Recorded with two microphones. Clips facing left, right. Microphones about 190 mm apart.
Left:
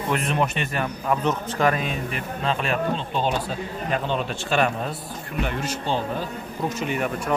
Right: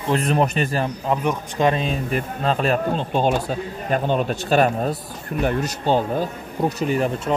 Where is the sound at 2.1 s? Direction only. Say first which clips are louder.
Right 4 dB; 40° right (ahead or behind).